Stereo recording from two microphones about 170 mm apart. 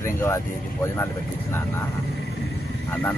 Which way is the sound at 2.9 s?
10° left (ahead or behind).